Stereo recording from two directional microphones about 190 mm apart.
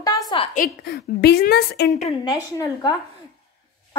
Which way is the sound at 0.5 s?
55° left (ahead or behind).